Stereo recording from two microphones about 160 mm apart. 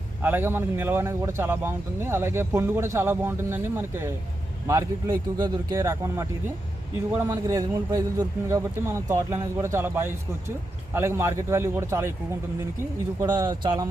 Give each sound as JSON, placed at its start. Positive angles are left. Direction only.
{"t": 0.2, "sound": "a man's voice", "side_deg": -15}
{"t": 13.1, "sound": "speech", "side_deg": -25}